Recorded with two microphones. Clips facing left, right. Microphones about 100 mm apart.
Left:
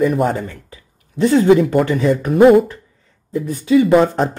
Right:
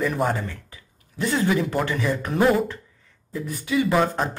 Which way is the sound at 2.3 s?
55° left (ahead or behind).